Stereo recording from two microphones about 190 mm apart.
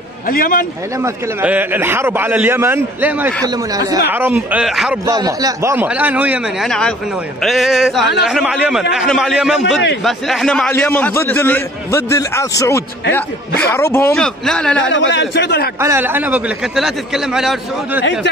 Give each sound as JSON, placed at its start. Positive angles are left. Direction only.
{"t": 0.3, "sound": "a man's voice", "side_deg": 50}
{"t": 1.0, "sound": "a man's voice", "side_deg": -10}
{"t": 3.4, "sound": "a man's voice", "side_deg": -20}
{"t": 4.1, "sound": "a man's voice", "side_deg": -10}
{"t": 5.0, "sound": "a man's voice", "side_deg": -20}
{"t": 14.8, "sound": "a man's voice", "side_deg": 75}
{"t": 15.8, "sound": "a man's voice", "side_deg": -10}